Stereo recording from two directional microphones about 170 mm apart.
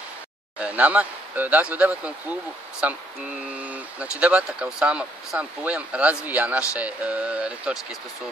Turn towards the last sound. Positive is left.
turn(degrees=-5)  # may be behind; listen again after turning